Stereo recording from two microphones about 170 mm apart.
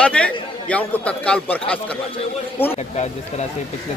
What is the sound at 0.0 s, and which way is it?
Speech, 5° left (ahead or behind).